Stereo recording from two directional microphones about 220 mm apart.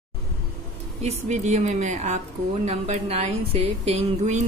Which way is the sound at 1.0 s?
30° right (ahead or behind).